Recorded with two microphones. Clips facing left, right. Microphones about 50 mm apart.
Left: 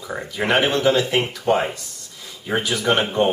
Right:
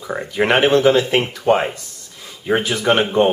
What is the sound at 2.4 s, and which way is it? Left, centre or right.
Speech, centre.